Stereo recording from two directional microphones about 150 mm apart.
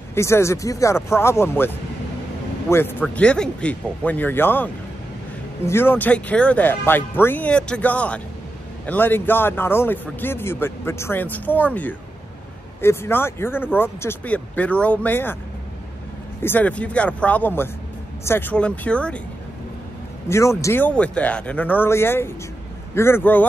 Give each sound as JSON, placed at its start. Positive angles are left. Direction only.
{"t": 0.1, "sound": "speech", "side_deg": 20}
{"t": 2.7, "sound": "speech", "side_deg": 15}
{"t": 5.7, "sound": "speech", "side_deg": 15}
{"t": 16.4, "sound": "speech", "side_deg": 10}
{"t": 20.2, "sound": "speech", "side_deg": 20}